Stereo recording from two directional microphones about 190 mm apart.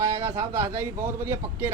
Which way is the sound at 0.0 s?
35° right (ahead or behind).